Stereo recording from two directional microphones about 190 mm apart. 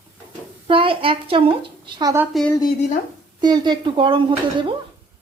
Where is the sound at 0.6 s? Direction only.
30° right (ahead or behind).